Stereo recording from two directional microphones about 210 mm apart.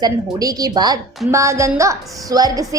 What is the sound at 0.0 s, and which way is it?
A woman's voice, 15° right (ahead or behind).